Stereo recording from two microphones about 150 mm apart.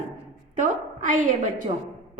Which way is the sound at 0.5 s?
55° right (ahead or behind).